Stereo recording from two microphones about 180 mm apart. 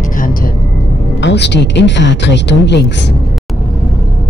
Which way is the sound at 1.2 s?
75° left (ahead or behind).